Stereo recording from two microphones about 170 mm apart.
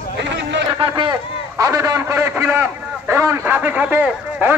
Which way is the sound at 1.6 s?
20° right (ahead or behind).